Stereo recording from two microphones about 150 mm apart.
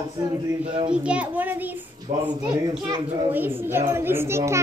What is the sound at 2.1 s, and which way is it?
Speech, 55° right (ahead or behind).